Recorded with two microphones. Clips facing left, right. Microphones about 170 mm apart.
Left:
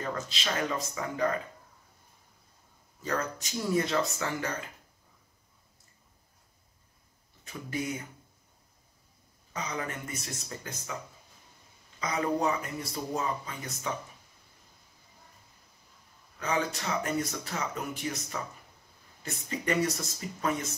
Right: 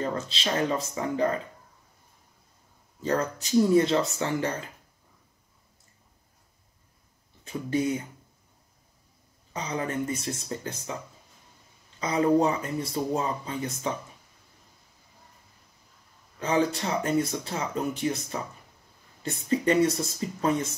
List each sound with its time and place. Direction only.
0.0 s speech: 30° right (ahead or behind)
3.0 s speech: 30° right (ahead or behind)
9.5 s speech: 30° right (ahead or behind)
12.0 s speech: 30° right (ahead or behind)
16.3 s speech: 30° right (ahead or behind)